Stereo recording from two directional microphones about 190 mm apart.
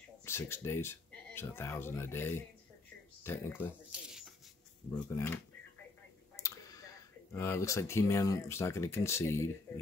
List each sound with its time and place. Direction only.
0.2 s speech: 15° left (ahead or behind)
5.1 s speech: 10° left (ahead or behind)
6.3 s tick: 15° left (ahead or behind)
7.3 s speech: 15° left (ahead or behind)